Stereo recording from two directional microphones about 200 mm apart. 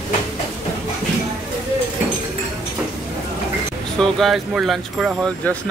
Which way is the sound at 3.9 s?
Centre (ahead or behind).